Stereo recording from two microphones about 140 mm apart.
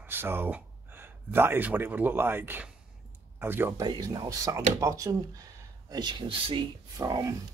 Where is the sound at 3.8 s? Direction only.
30° right (ahead or behind).